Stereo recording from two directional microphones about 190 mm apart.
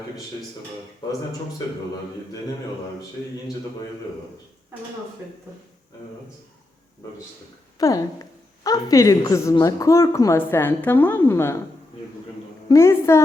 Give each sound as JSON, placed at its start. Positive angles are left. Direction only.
{"t": 7.8, "sound": "a woman's voice", "side_deg": 20}
{"t": 12.6, "sound": "a woman's voice", "side_deg": 15}